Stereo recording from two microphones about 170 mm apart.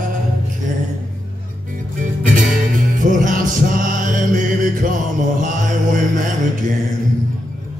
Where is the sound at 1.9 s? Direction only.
50° right (ahead or behind).